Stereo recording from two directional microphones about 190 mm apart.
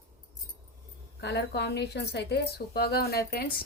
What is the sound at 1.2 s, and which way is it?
A woman's voice, 60° left (ahead or behind).